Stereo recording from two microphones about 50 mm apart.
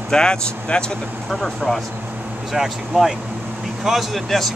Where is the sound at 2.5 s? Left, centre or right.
Centre.